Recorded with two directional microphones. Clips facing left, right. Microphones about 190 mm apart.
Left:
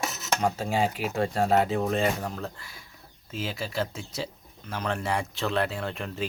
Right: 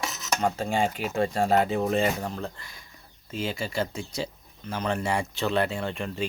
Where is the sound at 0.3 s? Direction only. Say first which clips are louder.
Right 1 dB; 5° left (ahead or behind).